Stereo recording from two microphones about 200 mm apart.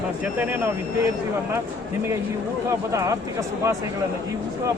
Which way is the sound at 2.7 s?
15° right (ahead or behind).